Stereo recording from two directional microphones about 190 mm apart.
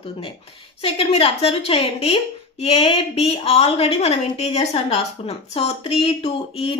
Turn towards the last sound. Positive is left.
turn(degrees=30)  # may be behind; listen again after turning